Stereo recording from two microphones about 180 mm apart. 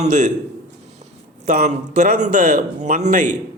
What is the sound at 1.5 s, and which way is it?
A man's voice, 40° right (ahead or behind).